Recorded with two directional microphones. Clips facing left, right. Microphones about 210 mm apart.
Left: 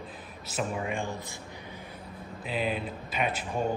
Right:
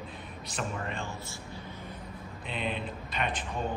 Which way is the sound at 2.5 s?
5° left (ahead or behind).